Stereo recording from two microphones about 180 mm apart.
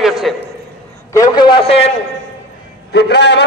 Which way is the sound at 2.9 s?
65° left (ahead or behind).